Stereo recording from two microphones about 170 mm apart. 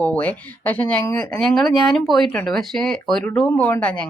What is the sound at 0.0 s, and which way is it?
Speech, 10° left (ahead or behind).